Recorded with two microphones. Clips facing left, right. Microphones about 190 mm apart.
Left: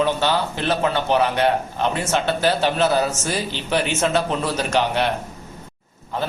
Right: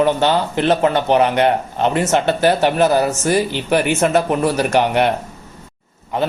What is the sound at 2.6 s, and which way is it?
Speech, 10° right (ahead or behind).